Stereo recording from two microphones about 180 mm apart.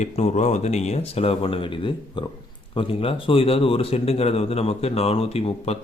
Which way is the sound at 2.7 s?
30° left (ahead or behind).